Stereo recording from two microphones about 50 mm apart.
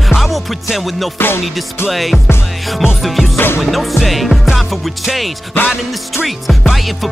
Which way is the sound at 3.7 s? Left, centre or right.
Centre.